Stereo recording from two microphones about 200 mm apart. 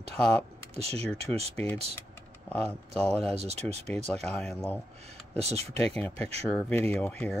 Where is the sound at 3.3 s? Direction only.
30° right (ahead or behind).